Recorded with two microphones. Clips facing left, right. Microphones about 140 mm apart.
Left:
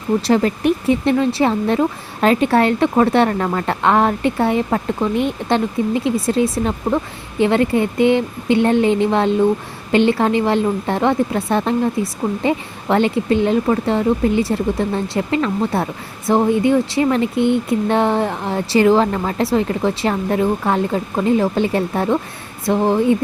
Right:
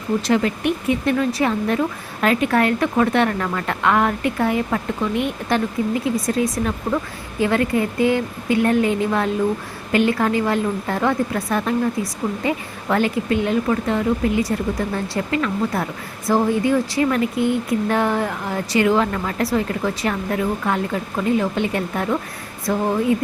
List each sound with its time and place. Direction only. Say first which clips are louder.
0.2 s a woman's voice: left 2 dB; 35° left (ahead or behind)